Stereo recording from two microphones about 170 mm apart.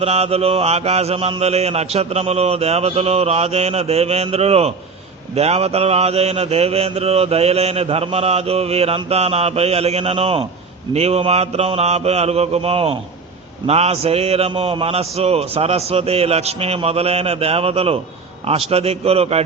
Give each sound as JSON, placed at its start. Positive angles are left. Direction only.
{"t": 0.0, "sound": "mantra", "side_deg": -35}